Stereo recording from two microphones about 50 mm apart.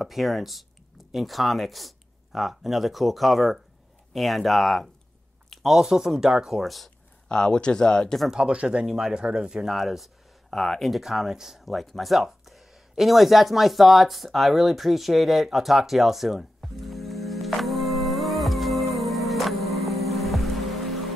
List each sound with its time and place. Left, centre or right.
0.0 s speech: centre
7.2 s speech: centre
8.3 s speech: centre
8.8 s speech: centre
9.7 s speech: centre
10.5 s a sound: centre